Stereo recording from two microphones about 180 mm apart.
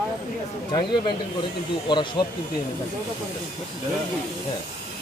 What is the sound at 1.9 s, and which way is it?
Speech, 25° left (ahead or behind).